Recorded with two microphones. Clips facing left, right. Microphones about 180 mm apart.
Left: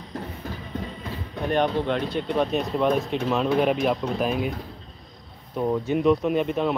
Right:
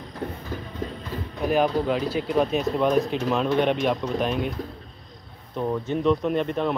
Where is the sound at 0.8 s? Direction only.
45° right (ahead or behind).